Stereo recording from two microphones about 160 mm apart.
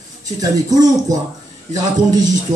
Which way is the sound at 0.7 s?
25° right (ahead or behind).